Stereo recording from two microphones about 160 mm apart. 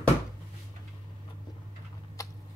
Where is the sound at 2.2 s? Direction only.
20° left (ahead or behind).